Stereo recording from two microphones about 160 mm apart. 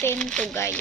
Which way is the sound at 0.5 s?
15° left (ahead or behind).